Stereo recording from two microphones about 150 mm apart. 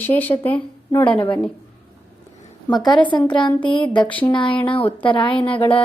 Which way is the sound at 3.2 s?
30° left (ahead or behind).